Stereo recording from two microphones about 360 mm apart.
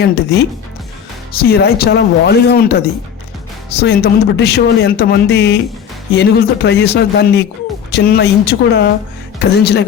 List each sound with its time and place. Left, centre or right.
0.0 s speech: left
3.8 s speech: left